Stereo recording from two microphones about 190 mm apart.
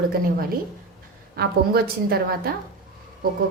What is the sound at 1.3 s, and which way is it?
A woman's voice, 55° right (ahead or behind).